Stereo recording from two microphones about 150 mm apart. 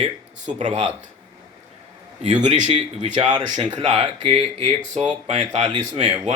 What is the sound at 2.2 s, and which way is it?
Speech, 50° right (ahead or behind).